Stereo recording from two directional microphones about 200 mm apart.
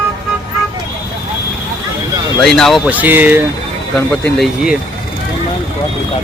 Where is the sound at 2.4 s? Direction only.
Centre (ahead or behind).